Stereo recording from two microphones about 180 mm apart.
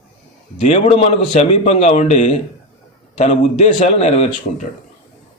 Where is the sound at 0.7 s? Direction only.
40° left (ahead or behind).